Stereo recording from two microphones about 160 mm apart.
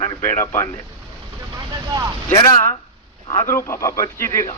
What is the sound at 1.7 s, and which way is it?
Speech, 25° right (ahead or behind).